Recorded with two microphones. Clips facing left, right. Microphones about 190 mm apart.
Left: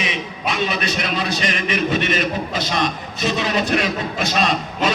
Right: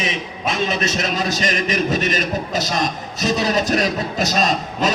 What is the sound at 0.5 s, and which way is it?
Music, 40° right (ahead or behind).